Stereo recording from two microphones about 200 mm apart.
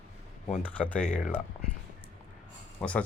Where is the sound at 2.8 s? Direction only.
5° left (ahead or behind).